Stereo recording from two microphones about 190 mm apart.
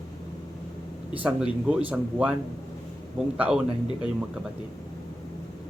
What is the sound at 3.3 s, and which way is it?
Speech, 5° right (ahead or behind).